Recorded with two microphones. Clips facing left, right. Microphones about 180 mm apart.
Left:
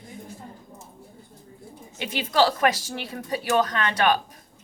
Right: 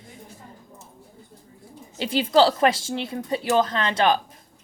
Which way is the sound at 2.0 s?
30° right (ahead or behind).